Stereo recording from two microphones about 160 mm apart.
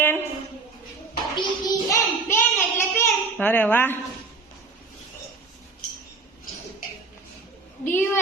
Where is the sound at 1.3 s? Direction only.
20° left (ahead or behind).